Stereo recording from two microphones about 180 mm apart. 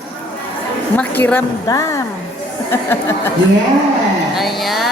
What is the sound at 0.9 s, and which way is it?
Speech, 10° left (ahead or behind).